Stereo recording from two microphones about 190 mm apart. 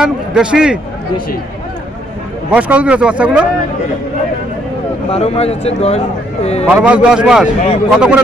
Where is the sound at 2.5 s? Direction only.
5° right (ahead or behind).